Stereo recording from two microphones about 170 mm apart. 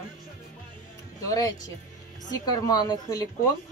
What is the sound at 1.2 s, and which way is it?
Speech, 20° left (ahead or behind).